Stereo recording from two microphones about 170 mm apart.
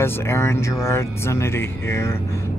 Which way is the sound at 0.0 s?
15° left (ahead or behind).